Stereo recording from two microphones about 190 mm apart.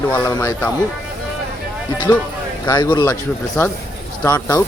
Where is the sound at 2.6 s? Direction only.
25° left (ahead or behind).